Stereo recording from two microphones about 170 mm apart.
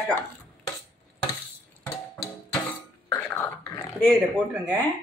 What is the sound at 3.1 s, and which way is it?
Cough, 15° left (ahead or behind).